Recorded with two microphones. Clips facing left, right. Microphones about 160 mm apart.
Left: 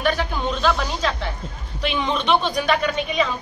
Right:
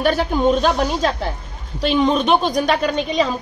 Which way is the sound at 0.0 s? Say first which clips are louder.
Right 6 dB; 40° right (ahead or behind).